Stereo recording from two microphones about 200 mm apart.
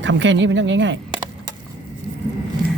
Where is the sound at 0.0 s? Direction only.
65° right (ahead or behind).